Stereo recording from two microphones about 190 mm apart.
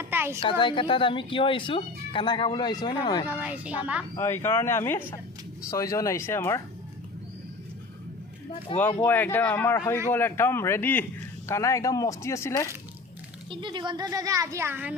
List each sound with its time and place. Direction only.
0.0 s a sound: 10° right (ahead or behind)
0.3 s speech: 25° left (ahead or behind)
3.2 s speech: 10° right (ahead or behind)
4.1 s speech: 15° left (ahead or behind)
8.7 s speech: 25° left (ahead or behind)
9.0 s speech: 10° left (ahead or behind)
13.5 s speech: 25° right (ahead or behind)